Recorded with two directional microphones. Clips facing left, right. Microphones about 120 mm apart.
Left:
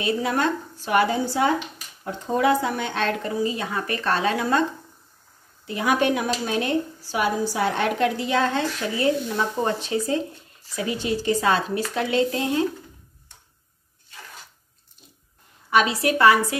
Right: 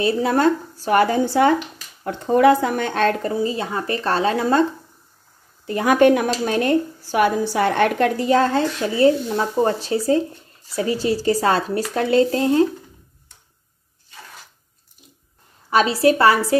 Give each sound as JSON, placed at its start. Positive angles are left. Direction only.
{"t": 0.0, "sound": "a woman's voice", "side_deg": -35}
{"t": 5.7, "sound": "a woman's voice", "side_deg": -50}
{"t": 15.7, "sound": "speech", "side_deg": -30}